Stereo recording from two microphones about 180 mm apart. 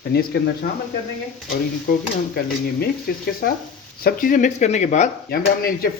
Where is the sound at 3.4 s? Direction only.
60° left (ahead or behind); by 5.1 s 40° left (ahead or behind).